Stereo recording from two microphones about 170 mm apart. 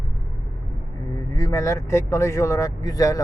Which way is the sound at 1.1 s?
20° left (ahead or behind).